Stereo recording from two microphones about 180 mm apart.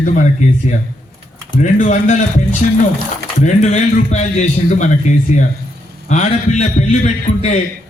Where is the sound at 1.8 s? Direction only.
45° left (ahead or behind).